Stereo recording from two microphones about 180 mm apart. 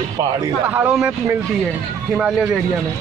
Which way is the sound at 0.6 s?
10° right (ahead or behind).